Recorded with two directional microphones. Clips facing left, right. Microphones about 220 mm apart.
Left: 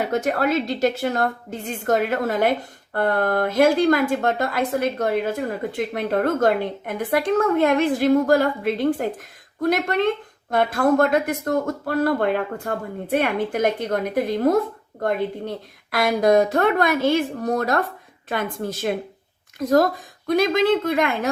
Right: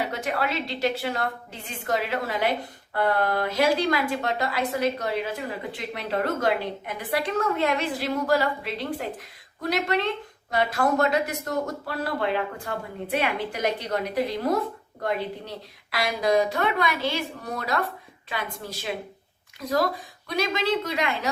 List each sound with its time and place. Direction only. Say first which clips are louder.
0.0 s a woman's voice: left 6 dB; 45° left (ahead or behind)